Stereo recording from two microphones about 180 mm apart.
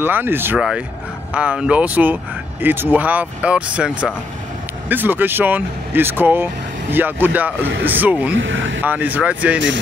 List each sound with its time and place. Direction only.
0.0 s speech: 10° right (ahead or behind)
8.4 s speech: 90° right
8.8 s speech: 10° right (ahead or behind)